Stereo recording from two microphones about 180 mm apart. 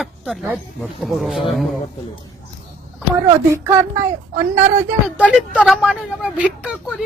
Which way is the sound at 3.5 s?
15° right (ahead or behind).